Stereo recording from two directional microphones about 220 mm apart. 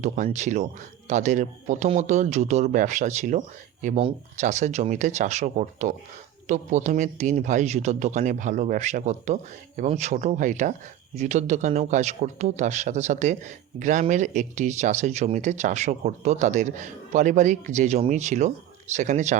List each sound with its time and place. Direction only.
0.0 s speech: 35° right (ahead or behind)